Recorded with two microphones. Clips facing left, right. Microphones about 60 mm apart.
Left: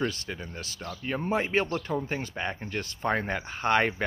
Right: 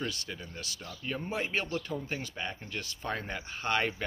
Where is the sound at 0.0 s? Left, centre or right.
Left.